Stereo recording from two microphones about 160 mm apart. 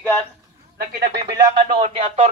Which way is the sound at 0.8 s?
75° right (ahead or behind).